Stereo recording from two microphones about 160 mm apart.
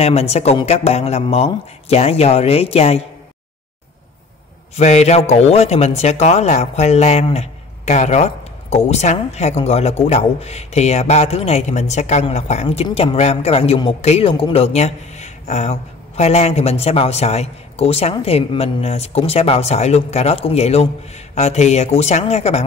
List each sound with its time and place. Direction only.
0.0 s a man's voice: 40° left (ahead or behind)
4.7 s a man's voice: 45° left (ahead or behind)